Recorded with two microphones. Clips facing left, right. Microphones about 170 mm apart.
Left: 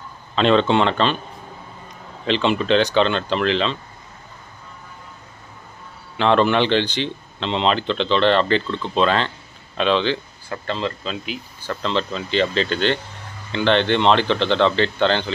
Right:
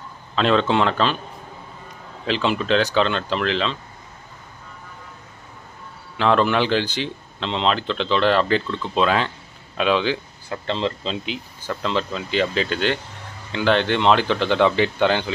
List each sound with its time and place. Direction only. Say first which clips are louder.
0.4 s speech: left 2 dB; centre (ahead or behind)
2.2 s speech: left 2 dB; 5° right (ahead or behind)
6.1 s speech: left 2 dB; centre (ahead or behind)
10.7 s speech: right 1 dB; 25° right (ahead or behind)
11.7 s speech: left 1 dB; 10° right (ahead or behind)